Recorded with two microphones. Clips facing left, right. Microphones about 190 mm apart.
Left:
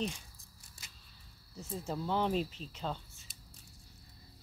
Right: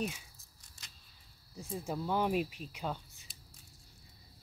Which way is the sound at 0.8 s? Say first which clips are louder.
Even; 5° left (ahead or behind).